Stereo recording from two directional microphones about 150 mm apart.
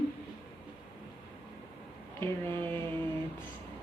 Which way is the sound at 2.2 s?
15° left (ahead or behind).